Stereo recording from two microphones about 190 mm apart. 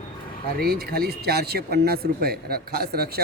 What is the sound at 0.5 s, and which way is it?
Speech, 55° right (ahead or behind).